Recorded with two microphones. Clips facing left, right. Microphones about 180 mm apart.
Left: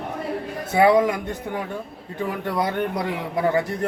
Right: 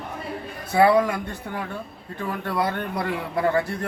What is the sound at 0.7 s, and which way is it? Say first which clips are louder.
A man's voice: left 1 dB; 20° left (ahead or behind).